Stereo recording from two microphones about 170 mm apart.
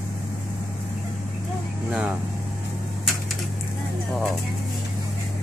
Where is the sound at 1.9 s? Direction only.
5° right (ahead or behind).